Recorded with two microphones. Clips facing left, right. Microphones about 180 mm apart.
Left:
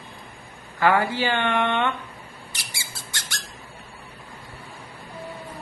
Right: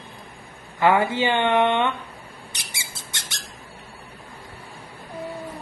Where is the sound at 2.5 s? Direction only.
20° right (ahead or behind).